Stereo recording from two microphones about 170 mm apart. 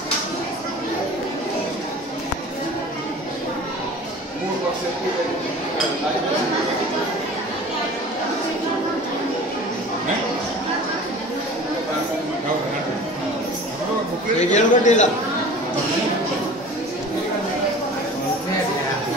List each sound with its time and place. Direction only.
14.4 s a man's voice: 45° left (ahead or behind)